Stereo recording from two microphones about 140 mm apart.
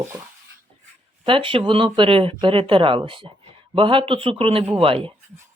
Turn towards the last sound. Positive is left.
turn(degrees=-40)  # may be behind; listen again after turning